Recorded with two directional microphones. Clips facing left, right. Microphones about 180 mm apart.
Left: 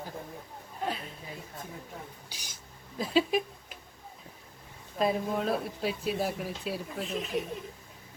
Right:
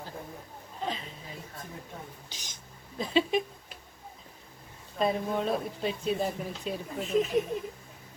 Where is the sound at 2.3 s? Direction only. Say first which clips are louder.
Right 1 dB; 10° left (ahead or behind).